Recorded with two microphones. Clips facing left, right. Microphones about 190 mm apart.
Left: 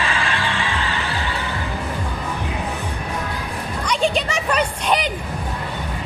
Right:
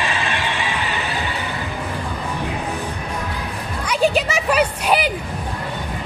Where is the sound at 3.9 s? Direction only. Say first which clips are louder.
Right 3 dB; 5° right (ahead or behind).